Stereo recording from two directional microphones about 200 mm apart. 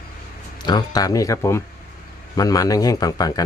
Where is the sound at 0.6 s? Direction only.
20° left (ahead or behind).